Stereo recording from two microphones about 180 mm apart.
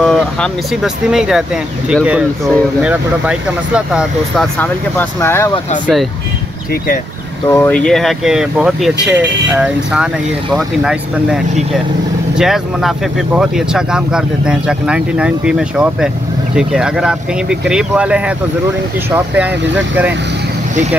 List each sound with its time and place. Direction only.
0.0 s speech: centre (ahead or behind)
4.6 s speech: 10° left (ahead or behind)
7.4 s speech: 15° left (ahead or behind)
7.7 s speech: 5° left (ahead or behind)